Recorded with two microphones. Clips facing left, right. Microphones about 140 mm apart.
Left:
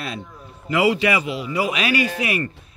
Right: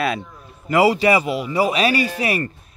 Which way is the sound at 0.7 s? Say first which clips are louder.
Right 3 dB; 35° right (ahead or behind).